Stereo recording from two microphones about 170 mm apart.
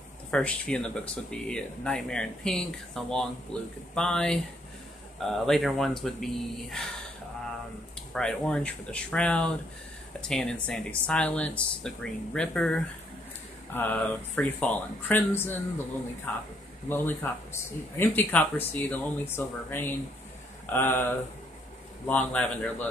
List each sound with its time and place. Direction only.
0.3 s speech: 5° left (ahead or behind)
8.1 s speech: 5° left (ahead or behind)